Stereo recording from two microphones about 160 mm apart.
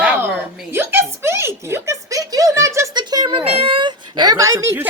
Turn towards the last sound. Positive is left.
turn(degrees=-20)  # may be behind; listen again after turning